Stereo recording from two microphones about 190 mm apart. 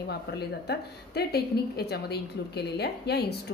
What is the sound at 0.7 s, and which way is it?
A woman's voice, 55° left (ahead or behind).